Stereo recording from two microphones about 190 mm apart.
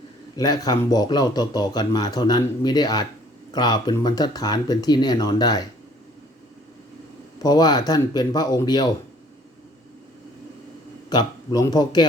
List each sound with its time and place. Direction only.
0.3 s a man's voice: 20° left (ahead or behind)
7.3 s a man's voice: 20° left (ahead or behind)
11.1 s a man's voice: 20° left (ahead or behind)